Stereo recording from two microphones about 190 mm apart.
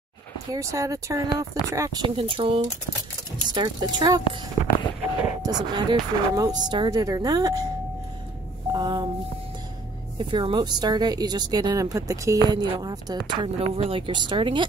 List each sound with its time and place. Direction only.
0.5 s speech: 15° right (ahead or behind)
5.4 s speech: 20° right (ahead or behind)
8.7 s speech: 25° right (ahead or behind)
10.1 s speech: 25° right (ahead or behind)